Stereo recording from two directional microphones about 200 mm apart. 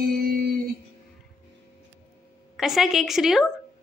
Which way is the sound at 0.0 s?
50° right (ahead or behind).